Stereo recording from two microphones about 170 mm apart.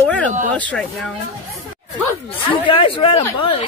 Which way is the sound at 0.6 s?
5° left (ahead or behind).